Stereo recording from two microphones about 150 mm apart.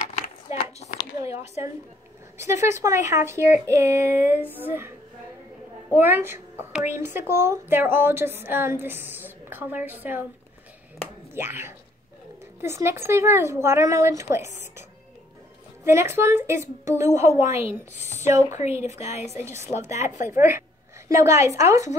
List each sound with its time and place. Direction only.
0.5 s a sound: 45° left (ahead or behind)
2.3 s a woman's voice: 20° right (ahead or behind)
5.9 s a woman's voice: 15° right (ahead or behind)
11.3 s a woman's voice: 15° right (ahead or behind)
15.8 s a woman's voice: 20° right (ahead or behind)
17.9 s speech: 50° left (ahead or behind)
19.2 s a woman's voice: 20° right (ahead or behind)
19.9 s speech: 50° left (ahead or behind)
20.2 s a woman's voice: 15° right (ahead or behind)